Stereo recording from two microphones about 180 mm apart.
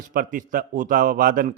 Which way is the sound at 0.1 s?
50° right (ahead or behind).